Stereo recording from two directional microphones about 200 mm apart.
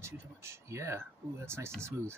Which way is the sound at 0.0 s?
15° right (ahead or behind).